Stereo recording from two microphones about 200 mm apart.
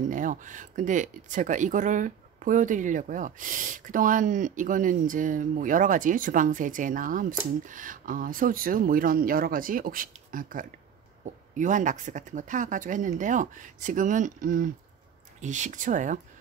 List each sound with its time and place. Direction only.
0.1 s speech: 40° right (ahead or behind)